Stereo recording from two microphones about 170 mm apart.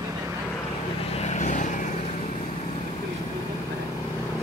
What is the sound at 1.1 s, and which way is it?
Vehicle, 40° left (ahead or behind).